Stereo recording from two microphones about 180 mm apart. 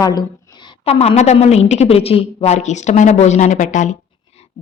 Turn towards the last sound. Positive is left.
turn(degrees=45)  # may be behind; listen again after turning